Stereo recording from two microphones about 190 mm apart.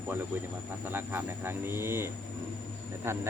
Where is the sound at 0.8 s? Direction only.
10° right (ahead or behind).